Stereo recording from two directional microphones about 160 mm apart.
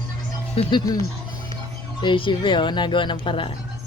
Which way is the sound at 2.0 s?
30° left (ahead or behind).